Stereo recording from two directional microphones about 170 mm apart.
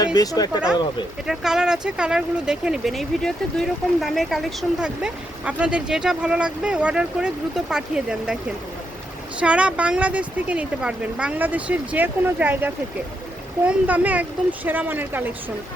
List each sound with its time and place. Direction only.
0.0 s speech: 20° left (ahead or behind)
1.3 s speech: 5° right (ahead or behind)
9.4 s speech: 5° right (ahead or behind)